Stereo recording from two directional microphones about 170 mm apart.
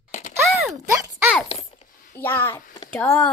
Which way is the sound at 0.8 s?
15° right (ahead or behind).